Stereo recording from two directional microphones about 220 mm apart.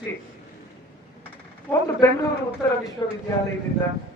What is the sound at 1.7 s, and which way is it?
Speech, 10° left (ahead or behind).